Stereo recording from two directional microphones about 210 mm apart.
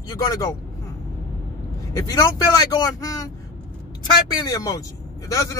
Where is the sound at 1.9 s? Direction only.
15° left (ahead or behind).